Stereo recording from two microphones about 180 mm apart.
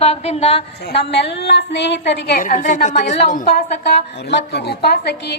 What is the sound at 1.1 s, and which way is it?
A woman's voice, 70° left (ahead or behind).